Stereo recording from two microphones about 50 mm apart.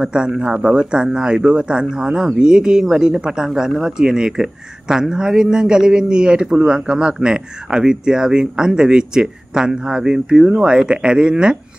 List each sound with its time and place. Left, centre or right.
0.0 s speech: centre